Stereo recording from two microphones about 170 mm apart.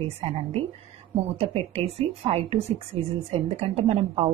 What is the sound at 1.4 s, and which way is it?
A woman's voice, 35° right (ahead or behind).